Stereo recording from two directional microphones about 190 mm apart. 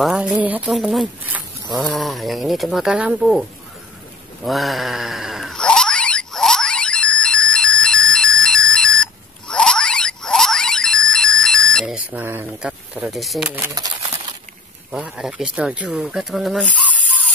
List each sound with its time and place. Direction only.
0.0 s speech: 5° right (ahead or behind)
4.5 s a sound: centre (ahead or behind)
13.7 s speech: 20° right (ahead or behind)
14.9 s speech: 5° right (ahead or behind)